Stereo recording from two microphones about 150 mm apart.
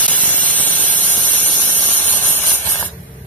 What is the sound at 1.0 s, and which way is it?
Spray, 60° left (ahead or behind).